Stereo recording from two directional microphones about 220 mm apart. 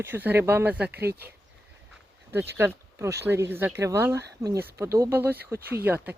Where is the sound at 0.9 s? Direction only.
45° right (ahead or behind).